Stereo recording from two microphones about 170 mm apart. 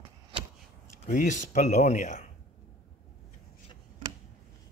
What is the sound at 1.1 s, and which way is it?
Speech, 45° left (ahead or behind).